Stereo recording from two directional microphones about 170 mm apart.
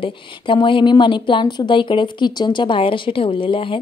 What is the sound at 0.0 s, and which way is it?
A woman's voice, 30° left (ahead or behind).